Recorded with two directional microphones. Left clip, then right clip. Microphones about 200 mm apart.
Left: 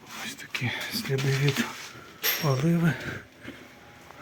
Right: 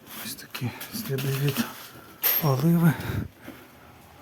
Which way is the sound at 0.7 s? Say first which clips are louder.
Left 4 dB; centre (ahead or behind).